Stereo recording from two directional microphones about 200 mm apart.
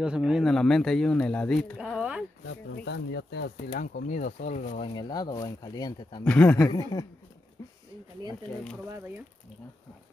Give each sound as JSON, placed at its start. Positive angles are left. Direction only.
{"t": 0.0, "sound": "speech", "side_deg": -5}
{"t": 2.7, "sound": "speech", "side_deg": 60}
{"t": 3.5, "sound": "speech", "side_deg": 45}
{"t": 4.9, "sound": "speech", "side_deg": 20}
{"t": 6.2, "sound": "speech", "side_deg": 5}
{"t": 6.7, "sound": "speech", "side_deg": 20}
{"t": 8.8, "sound": "speech", "side_deg": -15}